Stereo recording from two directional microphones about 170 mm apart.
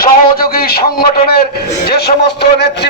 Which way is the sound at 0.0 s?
60° left (ahead or behind).